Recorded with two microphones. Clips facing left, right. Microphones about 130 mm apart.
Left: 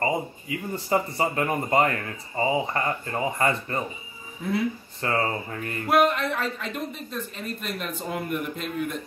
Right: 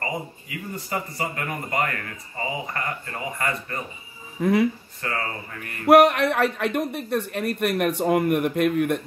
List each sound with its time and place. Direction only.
0.0 s speech: 30° left (ahead or behind)
4.4 s speech: 80° right
5.0 s speech: 30° left (ahead or behind)
5.9 s speech: 70° right (ahead or behind)